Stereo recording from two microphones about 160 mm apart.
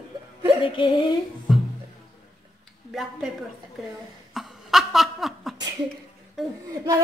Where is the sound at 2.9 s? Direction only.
Centre (ahead or behind).